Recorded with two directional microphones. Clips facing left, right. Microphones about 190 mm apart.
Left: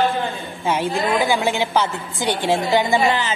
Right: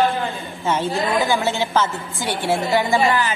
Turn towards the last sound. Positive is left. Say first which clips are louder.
# even
turn(degrees=20)  # may be behind; listen again after turning